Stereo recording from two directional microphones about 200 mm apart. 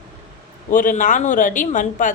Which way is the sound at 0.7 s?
40° left (ahead or behind).